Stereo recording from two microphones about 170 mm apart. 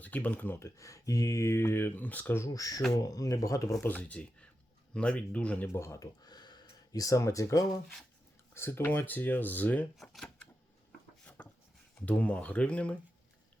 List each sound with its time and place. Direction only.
0.0 s speech: 10° left (ahead or behind)
11.4 s a sound: 10° left (ahead or behind)
11.9 s speech: 10° left (ahead or behind)